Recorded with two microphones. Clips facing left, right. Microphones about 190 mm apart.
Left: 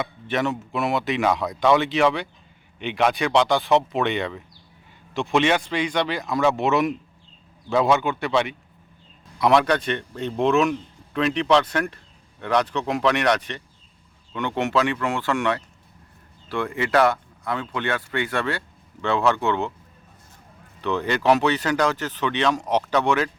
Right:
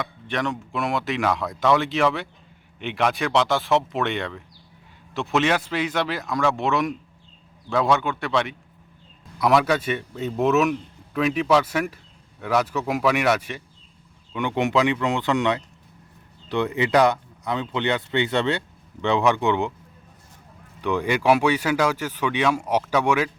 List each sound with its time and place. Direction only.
0.0 s speech: 5° left (ahead or behind); by 19.7 s 15° right (ahead or behind)
20.8 s speech: 10° right (ahead or behind)